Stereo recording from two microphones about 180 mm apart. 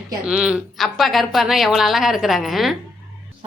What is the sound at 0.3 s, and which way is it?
Speech, 5° right (ahead or behind).